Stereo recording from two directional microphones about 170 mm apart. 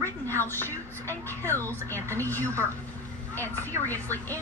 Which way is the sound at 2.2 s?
10° left (ahead or behind).